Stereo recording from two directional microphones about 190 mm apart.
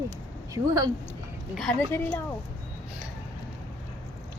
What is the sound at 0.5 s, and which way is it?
Speech, 15° right (ahead or behind).